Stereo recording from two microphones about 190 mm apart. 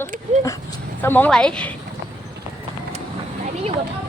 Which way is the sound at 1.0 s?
10° left (ahead or behind).